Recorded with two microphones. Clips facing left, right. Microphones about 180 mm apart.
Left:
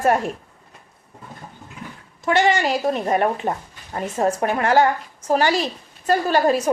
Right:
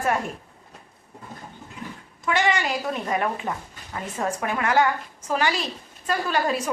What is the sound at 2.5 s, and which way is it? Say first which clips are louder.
A woman's voice: left 5 dB; 40° left (ahead or behind).